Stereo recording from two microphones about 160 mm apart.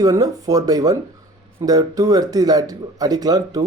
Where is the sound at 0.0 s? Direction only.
25° right (ahead or behind).